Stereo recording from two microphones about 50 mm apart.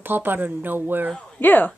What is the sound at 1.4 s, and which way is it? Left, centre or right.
Speech, left.